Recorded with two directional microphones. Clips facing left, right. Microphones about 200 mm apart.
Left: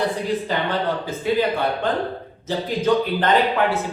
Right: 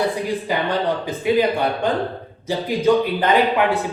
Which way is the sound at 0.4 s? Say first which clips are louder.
Right 2 dB; 15° right (ahead or behind).